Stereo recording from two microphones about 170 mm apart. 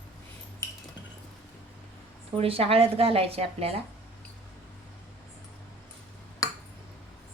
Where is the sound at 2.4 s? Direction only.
35° right (ahead or behind).